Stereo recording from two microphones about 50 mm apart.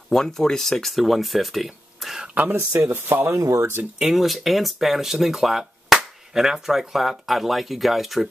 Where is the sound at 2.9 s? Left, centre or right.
Right.